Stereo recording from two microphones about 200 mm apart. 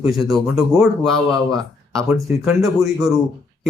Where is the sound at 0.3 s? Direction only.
Centre (ahead or behind).